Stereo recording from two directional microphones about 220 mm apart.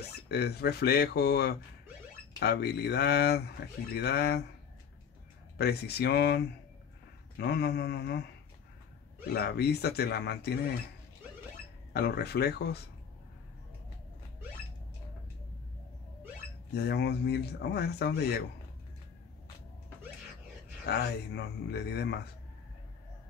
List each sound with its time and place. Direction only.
0.3 s speech: 45° left (ahead or behind)
5.6 s speech: 45° left (ahead or behind)
9.3 s speech: 45° left (ahead or behind)
11.9 s speech: 45° left (ahead or behind)
16.7 s speech: 50° left (ahead or behind)
20.8 s speech: 45° left (ahead or behind)